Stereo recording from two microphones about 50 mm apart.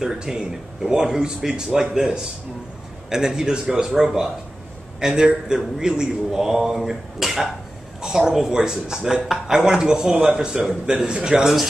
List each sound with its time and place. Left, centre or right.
0.0 s speech: centre